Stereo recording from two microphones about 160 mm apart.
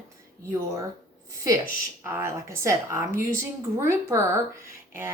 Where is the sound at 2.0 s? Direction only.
15° right (ahead or behind).